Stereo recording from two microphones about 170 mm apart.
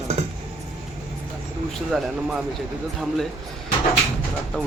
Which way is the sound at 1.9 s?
5° right (ahead or behind).